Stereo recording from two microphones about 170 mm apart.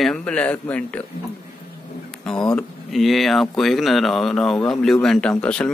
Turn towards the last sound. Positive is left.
turn(degrees=5)  # may be behind; listen again after turning